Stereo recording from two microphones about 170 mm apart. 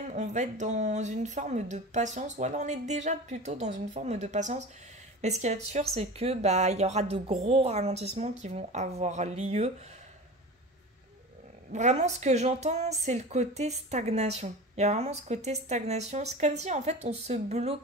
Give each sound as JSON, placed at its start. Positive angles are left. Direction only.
{"t": 0.1, "sound": "speech", "side_deg": -45}
{"t": 11.7, "sound": "speech", "side_deg": -45}